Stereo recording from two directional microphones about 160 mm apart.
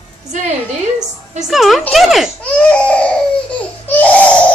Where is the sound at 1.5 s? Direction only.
Centre (ahead or behind).